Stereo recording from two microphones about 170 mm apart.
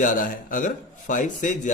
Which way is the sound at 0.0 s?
50° left (ahead or behind).